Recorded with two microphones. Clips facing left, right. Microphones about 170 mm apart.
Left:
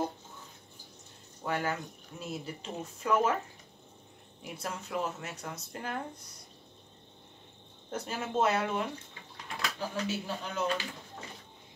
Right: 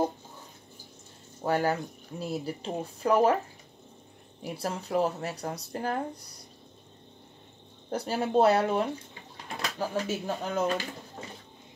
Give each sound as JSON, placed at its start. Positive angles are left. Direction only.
{"t": 1.4, "sound": "speech", "side_deg": -35}
{"t": 4.4, "sound": "speech", "side_deg": -35}
{"t": 7.9, "sound": "speech", "side_deg": -35}